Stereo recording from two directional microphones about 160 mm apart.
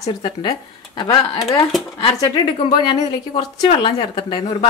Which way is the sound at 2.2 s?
30° left (ahead or behind).